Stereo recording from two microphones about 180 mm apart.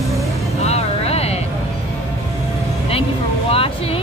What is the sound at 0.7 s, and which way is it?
Vehicle, 35° left (ahead or behind).